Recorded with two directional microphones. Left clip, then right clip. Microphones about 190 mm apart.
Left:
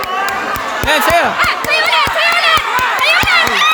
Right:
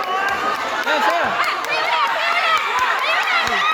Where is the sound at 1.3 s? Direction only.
60° left (ahead or behind).